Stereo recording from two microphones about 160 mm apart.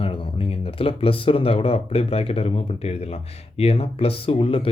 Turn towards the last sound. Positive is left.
turn(degrees=35)  # may be behind; listen again after turning